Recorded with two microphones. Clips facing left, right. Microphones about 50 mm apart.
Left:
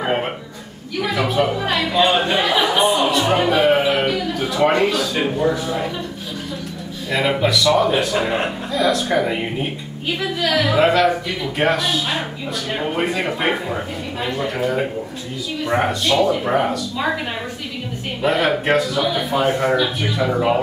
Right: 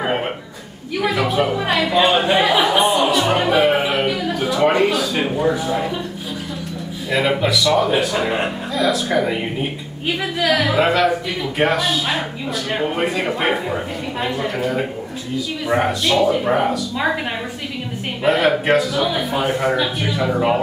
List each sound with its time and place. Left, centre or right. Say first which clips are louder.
0.0 s a sound: even; centre
1.0 s speech: right 1 dB; centre
7.1 s speech: even; centre
18.2 s speech: right 2 dB; centre